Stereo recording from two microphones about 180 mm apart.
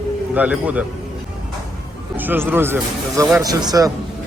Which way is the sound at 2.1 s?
10° right (ahead or behind).